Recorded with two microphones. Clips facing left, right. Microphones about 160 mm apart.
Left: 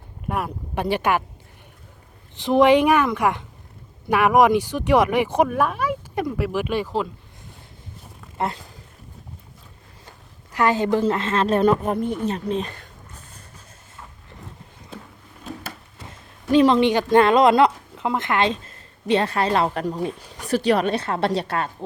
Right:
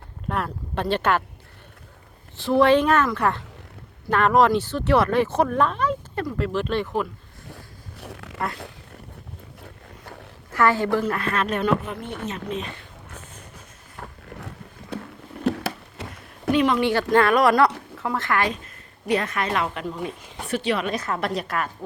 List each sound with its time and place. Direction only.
0.3 s speech: 10° left (ahead or behind)
2.3 s speech: 15° left (ahead or behind)
7.9 s zipper: 75° right (ahead or behind)
9.6 s boat: 70° right (ahead or behind)
10.5 s a woman's voice: 20° left (ahead or behind); by 12.9 s 40° left (ahead or behind)
13.9 s a sound: 75° right (ahead or behind)
16.0 s a woman's voice: 30° left (ahead or behind)